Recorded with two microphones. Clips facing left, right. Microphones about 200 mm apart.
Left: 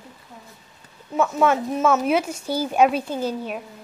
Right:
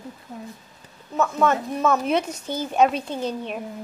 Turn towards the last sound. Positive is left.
turn(degrees=5)  # may be behind; listen again after turning